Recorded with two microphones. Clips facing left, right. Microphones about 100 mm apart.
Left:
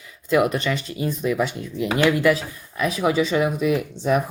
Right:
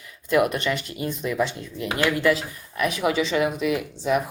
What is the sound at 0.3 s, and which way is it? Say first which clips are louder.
Speech: left 1 dB; 25° left (ahead or behind).